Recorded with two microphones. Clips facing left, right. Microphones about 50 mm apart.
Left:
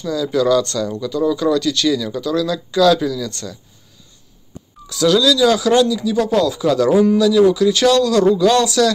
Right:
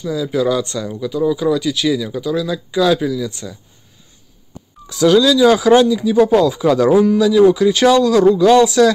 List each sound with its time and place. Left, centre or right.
0.0 s speech: centre
4.8 s speech: centre
6.9 s speech: centre
7.2 s speech: centre